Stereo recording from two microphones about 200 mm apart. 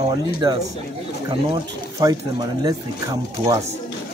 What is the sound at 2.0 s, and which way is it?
Speech, 20° right (ahead or behind).